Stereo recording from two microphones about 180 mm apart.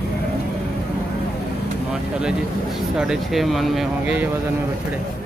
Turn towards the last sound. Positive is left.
turn(degrees=-5)  # may be behind; listen again after turning